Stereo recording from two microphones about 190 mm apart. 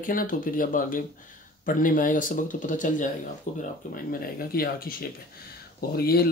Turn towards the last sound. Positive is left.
turn(degrees=55)  # may be behind; listen again after turning